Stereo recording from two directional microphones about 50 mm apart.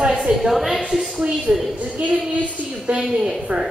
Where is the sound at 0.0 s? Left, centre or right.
Centre.